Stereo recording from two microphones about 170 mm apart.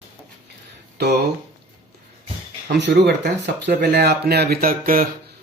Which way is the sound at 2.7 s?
85° right.